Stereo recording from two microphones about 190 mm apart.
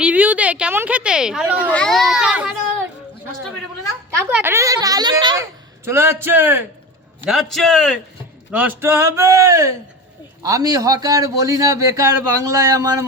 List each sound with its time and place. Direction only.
0.0 s a man's voice: 10° right (ahead or behind)
4.2 s a man's voice: 10° right (ahead or behind)
5.8 s a man's voice: 15° right (ahead or behind)
7.3 s a child's voice: centre (ahead or behind)
8.5 s a man's voice: 10° right (ahead or behind)